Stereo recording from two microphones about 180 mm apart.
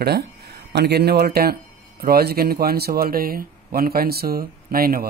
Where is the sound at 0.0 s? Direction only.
60° right (ahead or behind).